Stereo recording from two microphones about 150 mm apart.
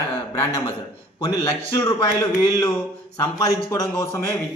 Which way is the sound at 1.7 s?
30° left (ahead or behind).